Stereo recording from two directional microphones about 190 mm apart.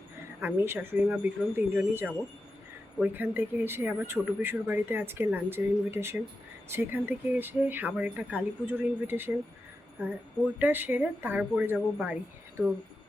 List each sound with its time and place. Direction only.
0.4 s speech: 10° right (ahead or behind)
10.6 s speech: 10° right (ahead or behind)